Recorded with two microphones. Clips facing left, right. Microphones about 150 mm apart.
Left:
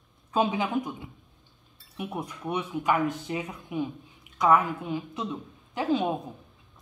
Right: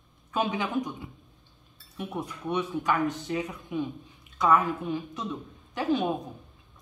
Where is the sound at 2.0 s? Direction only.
15° left (ahead or behind).